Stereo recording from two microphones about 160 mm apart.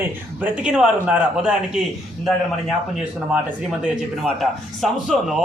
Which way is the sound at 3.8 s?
Centre (ahead or behind).